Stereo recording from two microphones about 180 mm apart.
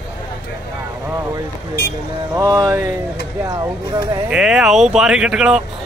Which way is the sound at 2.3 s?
20° right (ahead or behind).